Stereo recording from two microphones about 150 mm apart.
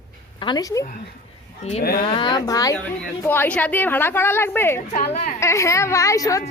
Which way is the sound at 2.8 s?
15° left (ahead or behind).